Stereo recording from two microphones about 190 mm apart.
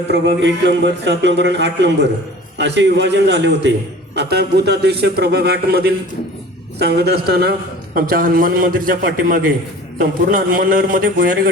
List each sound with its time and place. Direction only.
0.1 s a man's voice: 65° right (ahead or behind); by 11.3 s 50° right (ahead or behind)